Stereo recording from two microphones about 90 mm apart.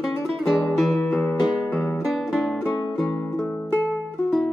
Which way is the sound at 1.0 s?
15° left (ahead or behind).